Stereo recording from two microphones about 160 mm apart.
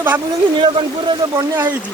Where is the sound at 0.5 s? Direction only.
30° right (ahead or behind).